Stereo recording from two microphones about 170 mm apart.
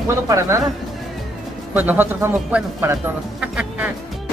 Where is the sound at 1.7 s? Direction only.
10° right (ahead or behind).